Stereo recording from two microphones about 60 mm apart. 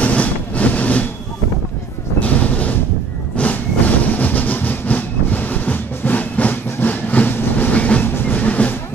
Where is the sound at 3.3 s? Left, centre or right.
Left.